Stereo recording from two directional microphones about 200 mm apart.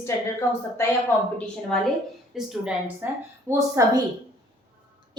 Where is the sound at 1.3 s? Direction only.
5° left (ahead or behind); by 4.0 s 15° right (ahead or behind).